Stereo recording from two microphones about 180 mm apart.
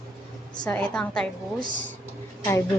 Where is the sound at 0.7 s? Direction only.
5° left (ahead or behind).